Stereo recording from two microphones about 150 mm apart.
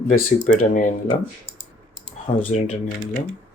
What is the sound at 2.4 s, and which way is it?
Speech, 45° left (ahead or behind).